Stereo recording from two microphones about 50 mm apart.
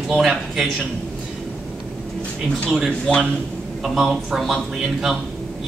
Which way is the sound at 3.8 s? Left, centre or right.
Centre.